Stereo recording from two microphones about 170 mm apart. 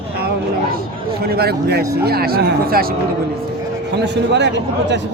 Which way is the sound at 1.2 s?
70° right (ahead or behind).